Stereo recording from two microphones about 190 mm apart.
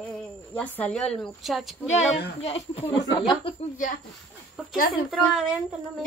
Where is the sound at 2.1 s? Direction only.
30° left (ahead or behind).